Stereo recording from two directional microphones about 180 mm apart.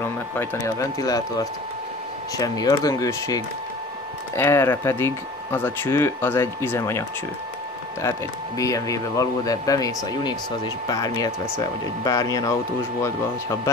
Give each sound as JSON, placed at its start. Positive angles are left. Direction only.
{"t": 0.0, "sound": "speech", "side_deg": 15}